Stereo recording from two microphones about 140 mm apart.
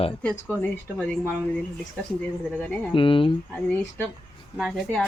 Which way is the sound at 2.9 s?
40° left (ahead or behind).